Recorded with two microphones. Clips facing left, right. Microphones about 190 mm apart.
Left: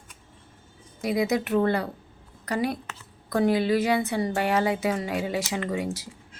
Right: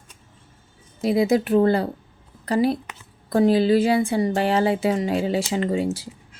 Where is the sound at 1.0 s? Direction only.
30° right (ahead or behind).